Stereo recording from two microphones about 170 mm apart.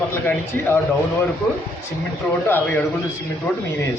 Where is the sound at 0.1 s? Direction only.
15° left (ahead or behind).